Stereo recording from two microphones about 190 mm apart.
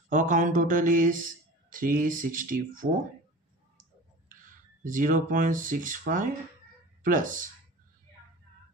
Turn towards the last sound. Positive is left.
turn(degrees=-45)  # may be behind; listen again after turning